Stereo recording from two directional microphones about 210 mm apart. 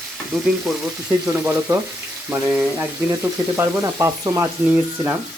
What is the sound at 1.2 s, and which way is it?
Speech, 10° right (ahead or behind).